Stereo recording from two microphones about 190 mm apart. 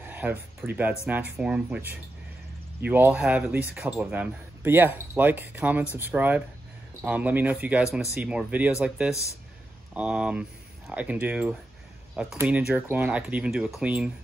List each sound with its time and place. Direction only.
0.0 s speech: 10° right (ahead or behind)
9.1 s speech: 15° left (ahead or behind)
9.9 s speech: 5° right (ahead or behind)